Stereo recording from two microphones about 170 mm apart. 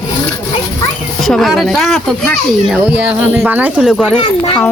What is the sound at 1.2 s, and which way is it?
Speech, centre (ahead or behind).